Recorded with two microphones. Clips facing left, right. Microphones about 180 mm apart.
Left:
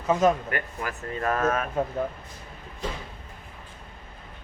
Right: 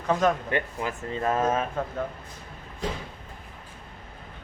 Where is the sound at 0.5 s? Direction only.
20° right (ahead or behind).